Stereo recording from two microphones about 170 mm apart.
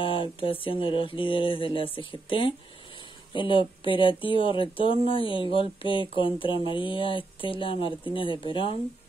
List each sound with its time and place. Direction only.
0.0 s speech: 30° left (ahead or behind)